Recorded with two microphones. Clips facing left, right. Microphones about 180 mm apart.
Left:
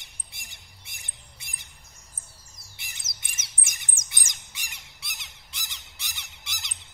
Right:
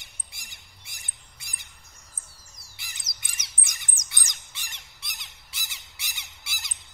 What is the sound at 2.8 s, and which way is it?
Bird, 25° left (ahead or behind).